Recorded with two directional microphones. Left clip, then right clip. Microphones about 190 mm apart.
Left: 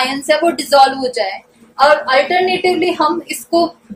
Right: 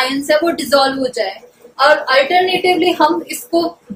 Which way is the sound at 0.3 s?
15° left (ahead or behind).